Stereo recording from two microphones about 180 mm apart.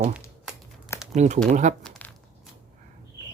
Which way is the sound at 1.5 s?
40° right (ahead or behind).